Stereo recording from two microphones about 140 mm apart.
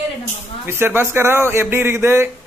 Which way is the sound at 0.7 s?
15° right (ahead or behind).